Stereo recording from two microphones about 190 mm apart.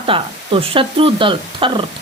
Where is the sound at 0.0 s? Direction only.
30° right (ahead or behind).